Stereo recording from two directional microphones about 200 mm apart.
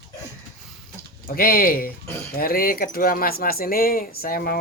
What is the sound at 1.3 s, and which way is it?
Speech, 45° left (ahead or behind).